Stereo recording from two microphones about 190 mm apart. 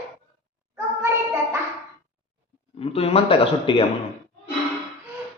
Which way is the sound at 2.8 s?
30° left (ahead or behind).